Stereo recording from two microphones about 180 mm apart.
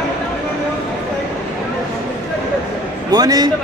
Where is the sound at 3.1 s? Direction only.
20° right (ahead or behind).